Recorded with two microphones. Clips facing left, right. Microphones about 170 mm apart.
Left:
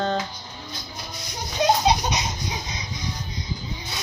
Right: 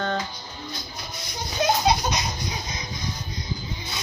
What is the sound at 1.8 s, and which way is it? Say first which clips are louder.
Laughter: left 1 dB; 20° left (ahead or behind).